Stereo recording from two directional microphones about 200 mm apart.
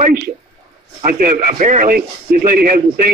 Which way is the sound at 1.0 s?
45° right (ahead or behind).